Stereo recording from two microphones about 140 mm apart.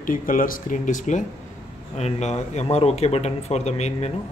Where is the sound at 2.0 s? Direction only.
50° left (ahead or behind).